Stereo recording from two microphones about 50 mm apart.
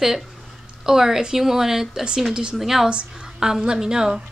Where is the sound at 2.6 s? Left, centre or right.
Centre.